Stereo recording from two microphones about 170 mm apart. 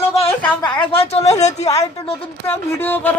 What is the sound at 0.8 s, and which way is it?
Speech, 35° left (ahead or behind).